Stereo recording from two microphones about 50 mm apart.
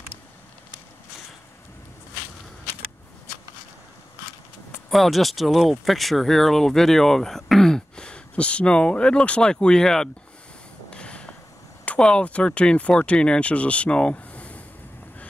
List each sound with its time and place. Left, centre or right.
4.8 s speech: centre
10.9 s a sound: left
12.0 s speech: centre